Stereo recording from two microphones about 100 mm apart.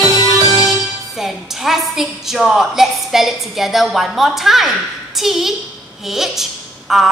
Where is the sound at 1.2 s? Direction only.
5° right (ahead or behind).